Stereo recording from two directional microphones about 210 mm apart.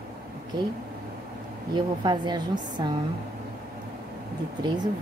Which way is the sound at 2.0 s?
20° right (ahead or behind).